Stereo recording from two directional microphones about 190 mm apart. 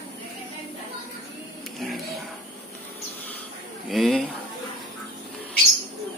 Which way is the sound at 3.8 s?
Centre (ahead or behind).